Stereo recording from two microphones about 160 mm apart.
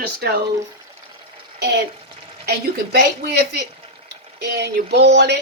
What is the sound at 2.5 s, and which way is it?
A woman's voice, 85° right.